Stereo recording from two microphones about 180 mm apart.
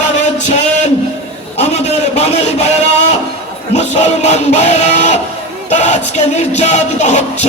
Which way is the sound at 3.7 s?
40° left (ahead or behind).